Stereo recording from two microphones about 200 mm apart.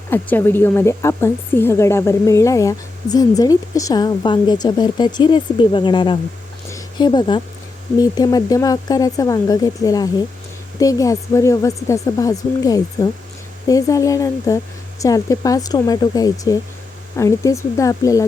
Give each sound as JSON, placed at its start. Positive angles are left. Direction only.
{"t": 0.1, "sound": "a woman's voice", "side_deg": 10}
{"t": 6.7, "sound": "a sound", "side_deg": 20}
{"t": 7.9, "sound": "a woman's voice", "side_deg": 20}